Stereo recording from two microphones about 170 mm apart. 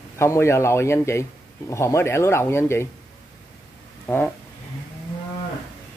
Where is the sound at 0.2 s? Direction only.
15° left (ahead or behind).